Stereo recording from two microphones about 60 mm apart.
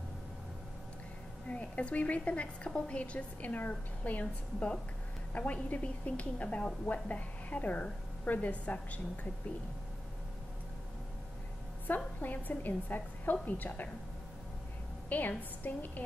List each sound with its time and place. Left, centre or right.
1.5 s a woman's voice: left
11.9 s a woman's voice: left
15.0 s a woman's voice: left